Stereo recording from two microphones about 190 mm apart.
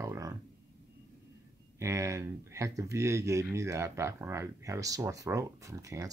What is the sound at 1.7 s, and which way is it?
Speech, 15° right (ahead or behind).